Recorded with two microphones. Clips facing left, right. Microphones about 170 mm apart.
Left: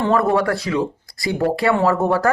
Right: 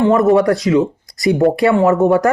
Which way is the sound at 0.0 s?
20° right (ahead or behind).